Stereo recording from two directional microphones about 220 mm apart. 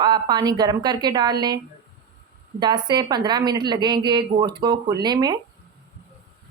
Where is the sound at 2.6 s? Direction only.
20° right (ahead or behind).